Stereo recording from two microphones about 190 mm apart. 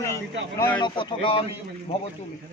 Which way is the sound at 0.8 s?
25° left (ahead or behind).